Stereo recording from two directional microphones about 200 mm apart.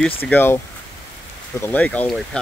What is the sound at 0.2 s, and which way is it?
Speech, 10° left (ahead or behind).